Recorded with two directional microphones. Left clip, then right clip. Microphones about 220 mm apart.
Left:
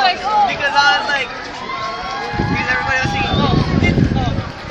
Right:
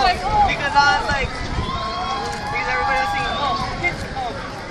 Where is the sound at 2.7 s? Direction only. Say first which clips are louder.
Left 2 dB; 20° left (ahead or behind).